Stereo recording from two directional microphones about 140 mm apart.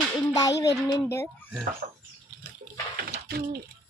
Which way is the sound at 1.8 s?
70° right (ahead or behind).